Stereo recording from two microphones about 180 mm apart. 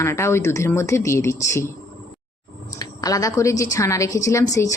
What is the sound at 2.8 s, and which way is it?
Speech, 20° left (ahead or behind).